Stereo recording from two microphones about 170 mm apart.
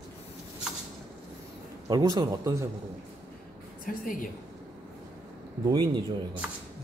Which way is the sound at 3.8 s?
55° left (ahead or behind).